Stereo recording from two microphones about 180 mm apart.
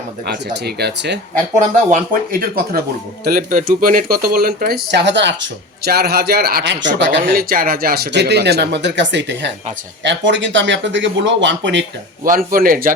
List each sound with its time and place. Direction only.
0.3 s speech: 65° right (ahead or behind)
1.5 s speech: 50° right (ahead or behind); by 6.8 s 65° right (ahead or behind)
7.3 s speech: 55° right (ahead or behind); by 11.9 s 85° right
12.2 s speech: 50° right (ahead or behind)